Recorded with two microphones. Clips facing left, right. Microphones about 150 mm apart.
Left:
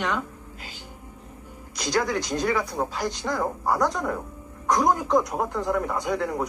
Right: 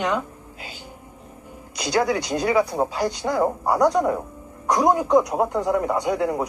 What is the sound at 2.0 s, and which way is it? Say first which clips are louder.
Speech: right 3 dB; 10° right (ahead or behind).